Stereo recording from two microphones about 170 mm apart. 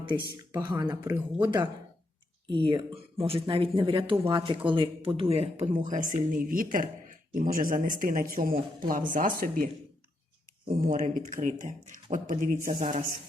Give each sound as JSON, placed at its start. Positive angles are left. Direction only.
{"t": 0.7, "sound": "speech", "side_deg": -20}
{"t": 2.5, "sound": "speech", "side_deg": -30}
{"t": 10.7, "sound": "speech", "side_deg": -55}